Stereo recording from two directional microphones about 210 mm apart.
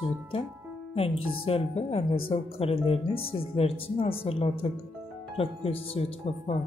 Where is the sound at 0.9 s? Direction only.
25° left (ahead or behind).